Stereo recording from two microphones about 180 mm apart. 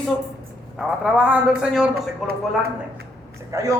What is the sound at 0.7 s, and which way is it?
A man's voice, 5° right (ahead or behind).